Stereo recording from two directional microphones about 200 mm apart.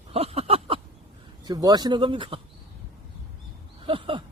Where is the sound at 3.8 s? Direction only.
25° right (ahead or behind).